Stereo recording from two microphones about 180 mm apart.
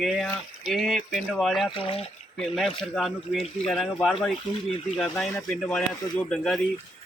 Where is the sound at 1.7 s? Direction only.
30° left (ahead or behind).